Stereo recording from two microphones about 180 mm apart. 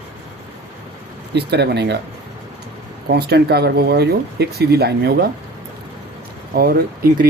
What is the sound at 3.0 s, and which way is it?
Speech, 65° right (ahead or behind).